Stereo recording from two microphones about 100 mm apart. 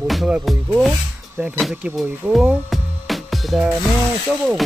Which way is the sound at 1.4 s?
15° right (ahead or behind).